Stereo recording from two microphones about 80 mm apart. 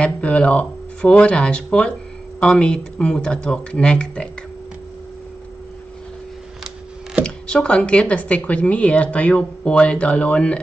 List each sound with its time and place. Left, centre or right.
0.0 s speech: centre
7.2 s speech: centre